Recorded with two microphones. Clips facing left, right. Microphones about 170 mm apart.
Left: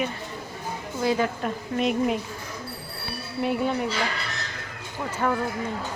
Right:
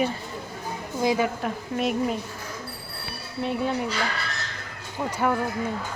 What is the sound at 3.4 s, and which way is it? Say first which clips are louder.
Speech: left 1 dB; 5° left (ahead or behind).